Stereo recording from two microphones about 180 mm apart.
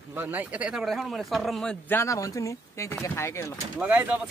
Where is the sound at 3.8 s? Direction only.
10° right (ahead or behind).